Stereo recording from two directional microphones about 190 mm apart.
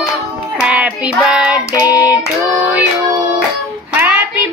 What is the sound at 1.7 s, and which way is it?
Child singing, 20° left (ahead or behind).